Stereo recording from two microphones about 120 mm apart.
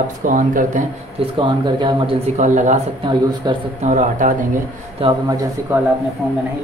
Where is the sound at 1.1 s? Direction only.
45° right (ahead or behind).